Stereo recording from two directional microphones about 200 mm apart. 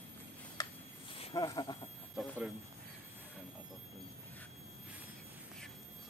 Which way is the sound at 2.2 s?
5° right (ahead or behind).